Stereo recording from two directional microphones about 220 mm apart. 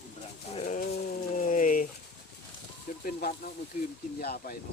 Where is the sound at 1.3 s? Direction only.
35° left (ahead or behind).